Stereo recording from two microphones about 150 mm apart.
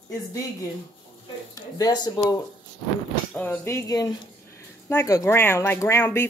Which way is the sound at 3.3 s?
10° left (ahead or behind).